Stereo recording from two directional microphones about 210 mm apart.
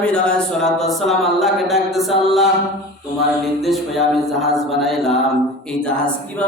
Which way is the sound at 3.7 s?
Centre (ahead or behind).